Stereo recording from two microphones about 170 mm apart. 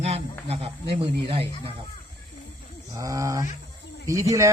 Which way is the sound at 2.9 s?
20° right (ahead or behind).